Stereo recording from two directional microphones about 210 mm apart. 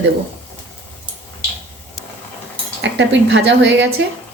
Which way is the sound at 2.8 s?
60° right (ahead or behind).